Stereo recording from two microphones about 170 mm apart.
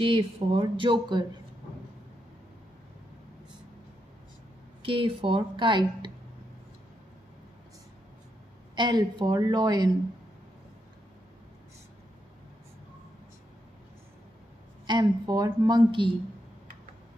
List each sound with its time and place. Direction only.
0.0 s speech: 30° right (ahead or behind)
4.8 s a woman's voice: 30° right (ahead or behind)
8.7 s speech: 25° right (ahead or behind)
14.9 s speech: 25° right (ahead or behind)